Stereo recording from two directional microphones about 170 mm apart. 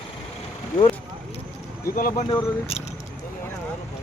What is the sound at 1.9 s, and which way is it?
Speech, 55° left (ahead or behind).